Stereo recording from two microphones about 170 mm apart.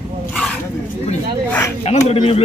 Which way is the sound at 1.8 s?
40° left (ahead or behind).